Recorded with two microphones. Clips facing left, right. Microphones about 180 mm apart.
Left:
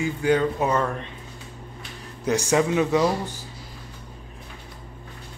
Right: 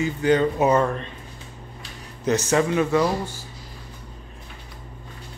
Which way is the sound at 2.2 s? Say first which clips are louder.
Right 1 dB; 10° left (ahead or behind).